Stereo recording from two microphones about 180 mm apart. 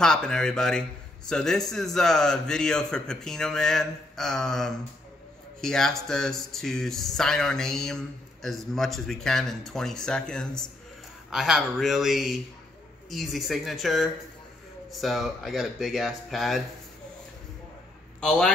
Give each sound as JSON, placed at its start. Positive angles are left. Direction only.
{"t": 0.0, "sound": "speech", "side_deg": 5}